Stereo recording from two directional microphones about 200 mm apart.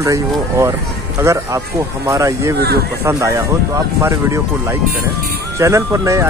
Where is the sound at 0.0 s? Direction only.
15° right (ahead or behind).